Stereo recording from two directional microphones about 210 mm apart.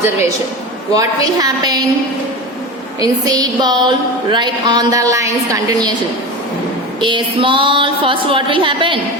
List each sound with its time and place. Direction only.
0.9 s a woman's voice: 15° right (ahead or behind)
3.0 s a woman's voice: 15° right (ahead or behind)
7.0 s speech: 25° right (ahead or behind)